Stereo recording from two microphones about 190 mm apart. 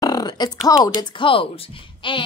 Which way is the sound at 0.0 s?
20° left (ahead or behind).